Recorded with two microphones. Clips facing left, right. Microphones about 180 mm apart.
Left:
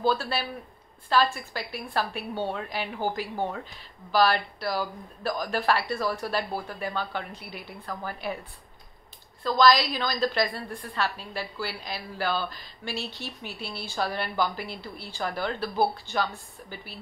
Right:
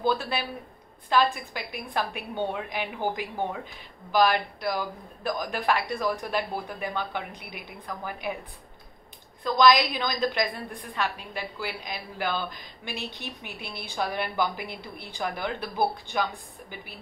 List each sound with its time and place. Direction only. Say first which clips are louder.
0.0 s a woman's voice: even; 15° right (ahead or behind)
9.4 s a woman's voice: right 1 dB; 15° right (ahead or behind)